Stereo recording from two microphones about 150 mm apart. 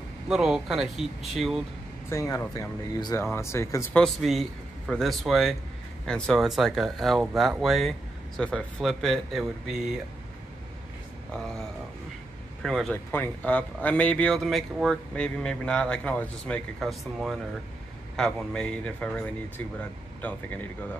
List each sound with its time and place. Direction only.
0.3 s speech: 5° right (ahead or behind)
2.0 s speech: 20° left (ahead or behind)
3.9 s speech: 5° left (ahead or behind)
12.9 s speech: 15° left (ahead or behind)
18.1 s speech: 5° left (ahead or behind)